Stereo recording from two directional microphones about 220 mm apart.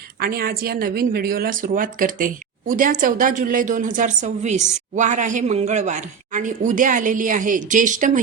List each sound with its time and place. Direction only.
0.2 s speech: 45° right (ahead or behind)